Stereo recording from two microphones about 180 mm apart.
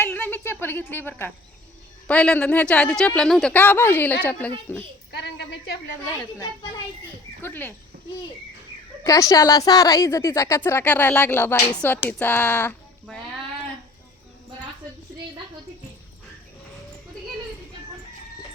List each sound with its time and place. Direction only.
0.0 s a woman's voice: 10° left (ahead or behind)
5.1 s a woman's voice: 65° left (ahead or behind)
6.3 s a child's voice: 20° left (ahead or behind)
9.0 s a woman's voice: 20° left (ahead or behind)